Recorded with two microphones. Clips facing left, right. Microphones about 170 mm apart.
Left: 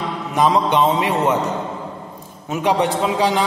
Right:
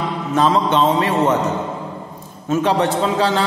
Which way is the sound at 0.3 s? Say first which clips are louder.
Even; 15° left (ahead or behind).